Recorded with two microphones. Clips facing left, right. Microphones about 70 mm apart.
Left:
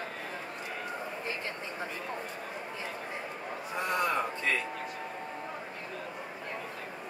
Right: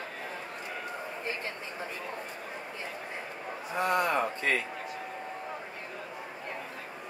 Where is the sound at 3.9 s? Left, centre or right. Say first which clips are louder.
Even; right.